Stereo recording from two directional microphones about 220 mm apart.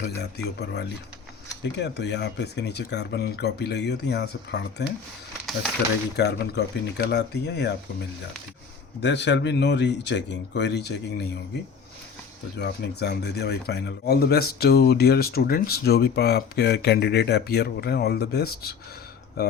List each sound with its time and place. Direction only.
0.2 s speech: 50° left (ahead or behind)
6.1 s speech: 50° left (ahead or behind)
9.0 s speech: 50° left (ahead or behind)
12.5 s speech: 50° left (ahead or behind)